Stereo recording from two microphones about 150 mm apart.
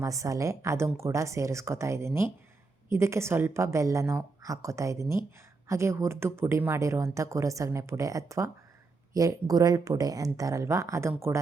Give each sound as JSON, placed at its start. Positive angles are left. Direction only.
{"t": 0.0, "sound": "speech", "side_deg": -20}